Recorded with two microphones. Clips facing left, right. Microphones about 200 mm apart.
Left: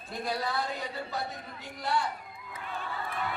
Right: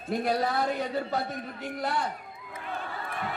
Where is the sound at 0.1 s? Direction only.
60° right (ahead or behind).